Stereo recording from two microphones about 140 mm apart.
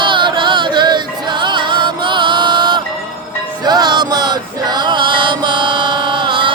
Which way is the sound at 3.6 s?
30° right (ahead or behind).